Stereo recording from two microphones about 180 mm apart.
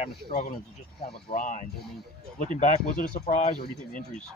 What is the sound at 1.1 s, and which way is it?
Speech, 45° left (ahead or behind).